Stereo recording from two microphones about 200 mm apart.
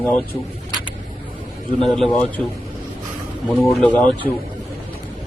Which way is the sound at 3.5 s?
5° left (ahead or behind).